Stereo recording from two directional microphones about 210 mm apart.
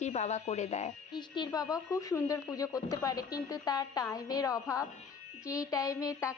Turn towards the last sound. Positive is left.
turn(degrees=15)  # may be behind; listen again after turning